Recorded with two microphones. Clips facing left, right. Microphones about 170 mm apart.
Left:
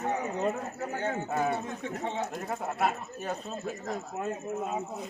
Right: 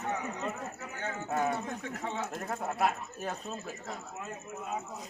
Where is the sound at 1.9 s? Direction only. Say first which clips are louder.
Left 5 dB; 25° left (ahead or behind).